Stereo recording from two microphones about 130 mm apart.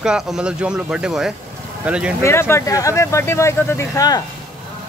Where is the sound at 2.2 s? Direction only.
20° left (ahead or behind).